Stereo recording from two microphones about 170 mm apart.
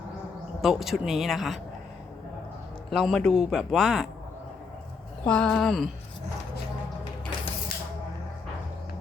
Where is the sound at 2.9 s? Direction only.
Centre (ahead or behind).